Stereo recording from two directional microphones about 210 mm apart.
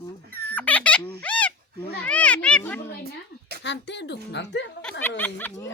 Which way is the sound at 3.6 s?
55° left (ahead or behind).